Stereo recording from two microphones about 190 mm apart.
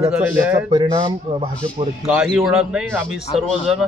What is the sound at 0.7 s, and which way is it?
Speech, 20° right (ahead or behind).